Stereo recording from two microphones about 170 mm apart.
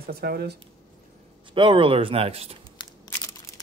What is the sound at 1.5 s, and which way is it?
Speech, 30° right (ahead or behind).